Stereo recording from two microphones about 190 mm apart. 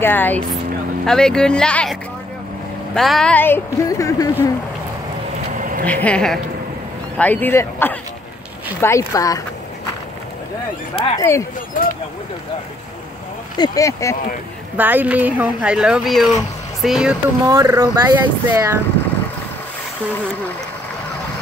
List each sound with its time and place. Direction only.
0.0 s speech: 10° left (ahead or behind)
5.6 s a sound: 45° right (ahead or behind)
5.9 s speech: 5° left (ahead or behind)
11.1 s speech: 15° left (ahead or behind)
13.6 s speech: 15° left (ahead or behind)
14.8 s speech: 10° right (ahead or behind)
17.5 s speech: 15° right (ahead or behind)